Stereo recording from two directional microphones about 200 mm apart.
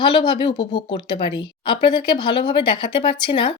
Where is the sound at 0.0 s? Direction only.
25° left (ahead or behind).